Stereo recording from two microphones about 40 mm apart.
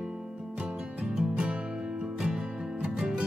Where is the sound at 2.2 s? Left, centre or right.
Centre.